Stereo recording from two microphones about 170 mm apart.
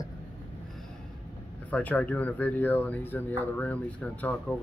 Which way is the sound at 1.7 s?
10° left (ahead or behind).